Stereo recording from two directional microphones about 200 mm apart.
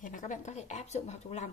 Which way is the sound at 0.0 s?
40° left (ahead or behind).